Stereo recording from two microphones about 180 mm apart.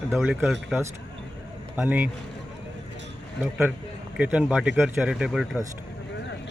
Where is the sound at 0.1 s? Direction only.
5° right (ahead or behind).